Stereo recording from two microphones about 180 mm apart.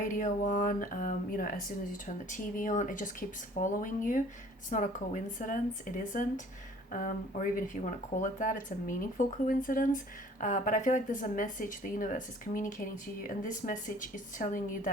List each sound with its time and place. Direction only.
0.0 s speech: 45° left (ahead or behind)